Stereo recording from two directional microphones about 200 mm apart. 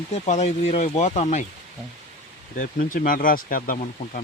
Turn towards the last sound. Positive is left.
turn(degrees=45)  # may be behind; listen again after turning